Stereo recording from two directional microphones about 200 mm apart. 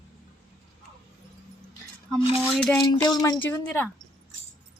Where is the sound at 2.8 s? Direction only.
20° left (ahead or behind).